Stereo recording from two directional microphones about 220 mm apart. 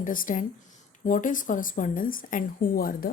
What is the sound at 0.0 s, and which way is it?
A woman's voice, 40° left (ahead or behind).